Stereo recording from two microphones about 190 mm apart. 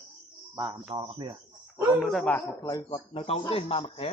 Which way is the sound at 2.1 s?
5° left (ahead or behind).